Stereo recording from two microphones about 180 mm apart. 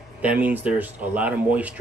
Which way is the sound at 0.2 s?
10° right (ahead or behind).